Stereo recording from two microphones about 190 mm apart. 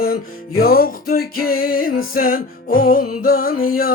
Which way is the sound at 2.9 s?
50° left (ahead or behind).